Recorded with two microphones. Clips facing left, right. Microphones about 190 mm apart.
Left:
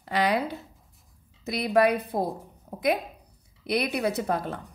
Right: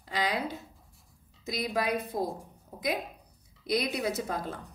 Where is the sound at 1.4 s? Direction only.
60° left (ahead or behind).